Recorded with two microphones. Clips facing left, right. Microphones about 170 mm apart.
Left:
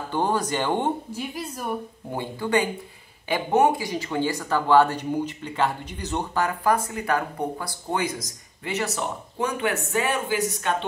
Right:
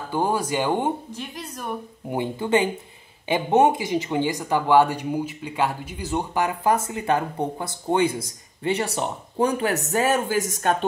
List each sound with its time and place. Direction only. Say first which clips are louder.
0.1 s speech: right 1 dB; 10° right (ahead or behind)
1.1 s a woman's voice: left 3 dB; 10° left (ahead or behind)
2.0 s speech: right 4 dB; 20° right (ahead or behind); by 10.9 s 45° right (ahead or behind)